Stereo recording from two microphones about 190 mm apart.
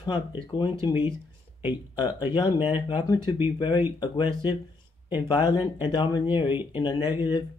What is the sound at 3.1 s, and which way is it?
Speech, 10° right (ahead or behind).